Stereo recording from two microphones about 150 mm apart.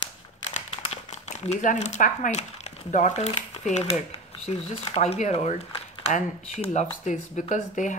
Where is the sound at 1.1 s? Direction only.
50° left (ahead or behind).